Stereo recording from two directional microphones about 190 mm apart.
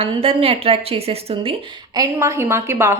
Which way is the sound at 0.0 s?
30° right (ahead or behind).